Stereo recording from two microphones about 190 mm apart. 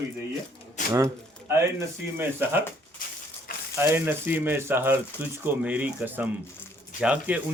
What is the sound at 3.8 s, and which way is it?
Speech, 10° right (ahead or behind).